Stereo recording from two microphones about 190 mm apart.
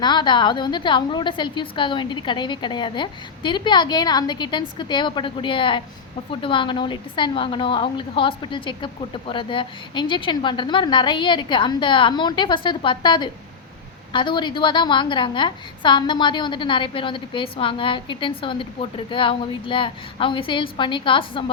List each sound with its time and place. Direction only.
0.0 s a woman's voice: 25° left (ahead or behind)